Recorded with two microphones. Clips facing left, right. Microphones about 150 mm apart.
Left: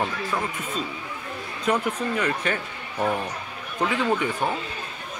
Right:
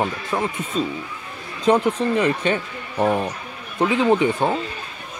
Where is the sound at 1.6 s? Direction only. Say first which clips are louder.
Right 7 dB; 30° right (ahead or behind).